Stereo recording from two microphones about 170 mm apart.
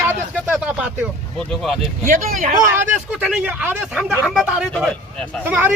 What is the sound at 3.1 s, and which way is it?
Speech, 5° right (ahead or behind).